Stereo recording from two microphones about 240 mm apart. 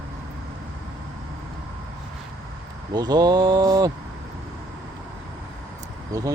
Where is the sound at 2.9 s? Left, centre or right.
Centre.